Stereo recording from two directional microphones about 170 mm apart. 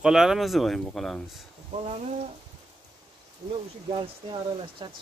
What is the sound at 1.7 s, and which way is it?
Speech, 40° right (ahead or behind).